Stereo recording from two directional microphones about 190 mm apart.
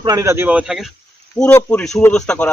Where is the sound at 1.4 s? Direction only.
10° left (ahead or behind).